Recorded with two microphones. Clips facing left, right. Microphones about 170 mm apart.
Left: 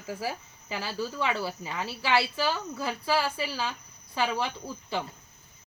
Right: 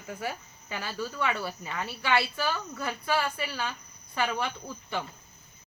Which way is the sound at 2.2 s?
25° left (ahead or behind).